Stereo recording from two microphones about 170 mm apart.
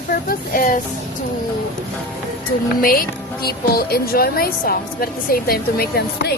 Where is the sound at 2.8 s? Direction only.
60° left (ahead or behind).